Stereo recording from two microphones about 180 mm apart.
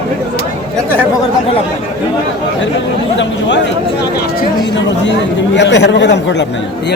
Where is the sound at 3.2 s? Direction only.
80° left.